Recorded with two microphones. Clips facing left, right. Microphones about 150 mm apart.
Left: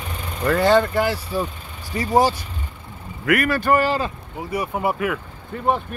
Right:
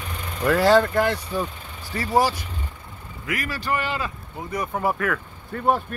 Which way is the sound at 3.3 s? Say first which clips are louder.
Left 9 dB; 60° left (ahead or behind).